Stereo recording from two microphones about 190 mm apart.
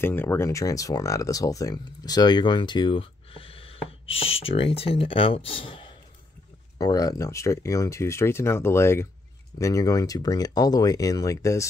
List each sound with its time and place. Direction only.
0.0 s speech: 10° left (ahead or behind)